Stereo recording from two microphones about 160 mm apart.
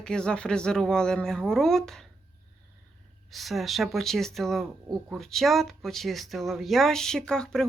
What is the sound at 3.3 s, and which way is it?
Speech, centre (ahead or behind).